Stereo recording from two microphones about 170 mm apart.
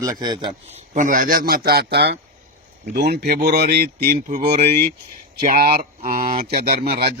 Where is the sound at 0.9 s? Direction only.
50° right (ahead or behind); by 4.2 s 65° right (ahead or behind).